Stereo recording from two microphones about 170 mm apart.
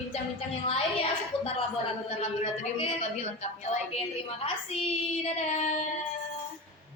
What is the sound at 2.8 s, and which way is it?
A woman's voice, 40° left (ahead or behind).